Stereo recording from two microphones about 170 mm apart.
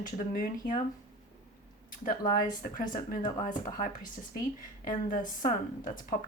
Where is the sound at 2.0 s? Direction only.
50° left (ahead or behind).